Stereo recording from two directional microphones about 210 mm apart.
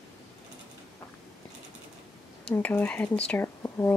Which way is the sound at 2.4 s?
10° left (ahead or behind).